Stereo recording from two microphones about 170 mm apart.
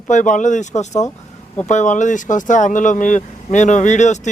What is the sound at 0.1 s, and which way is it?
Speech, 45° left (ahead or behind).